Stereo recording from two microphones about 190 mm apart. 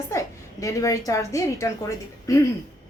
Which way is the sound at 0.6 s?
15° left (ahead or behind).